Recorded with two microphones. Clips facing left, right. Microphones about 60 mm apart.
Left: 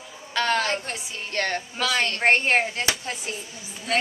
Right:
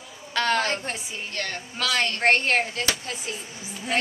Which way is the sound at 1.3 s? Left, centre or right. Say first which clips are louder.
Left 7 dB; left.